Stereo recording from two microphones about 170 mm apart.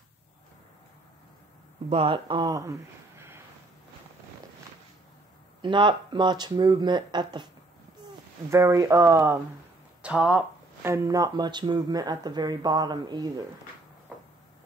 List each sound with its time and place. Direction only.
1.9 s speech: 30° right (ahead or behind); by 3.3 s 15° right (ahead or behind)
5.6 s speech: 30° right (ahead or behind)
8.5 s speech: 15° right (ahead or behind)